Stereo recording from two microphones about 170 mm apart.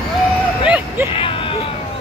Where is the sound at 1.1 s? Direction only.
30° left (ahead or behind).